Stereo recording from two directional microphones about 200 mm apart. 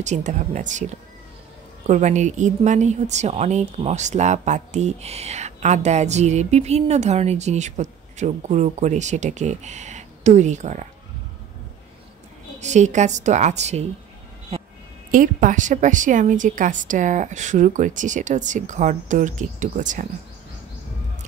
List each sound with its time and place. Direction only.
0.0 s a woman's voice: 35° right (ahead or behind)
1.9 s a woman's voice: 35° right (ahead or behind)
12.5 s a woman's voice: 35° right (ahead or behind)
14.5 s a sound: 30° right (ahead or behind)
15.0 s a woman's voice: 40° right (ahead or behind)